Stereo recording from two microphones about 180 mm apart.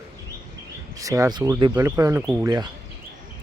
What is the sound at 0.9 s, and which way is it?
Speech, 20° right (ahead or behind).